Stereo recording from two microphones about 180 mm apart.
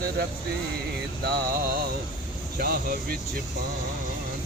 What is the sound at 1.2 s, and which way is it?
Speech, 65° right (ahead or behind).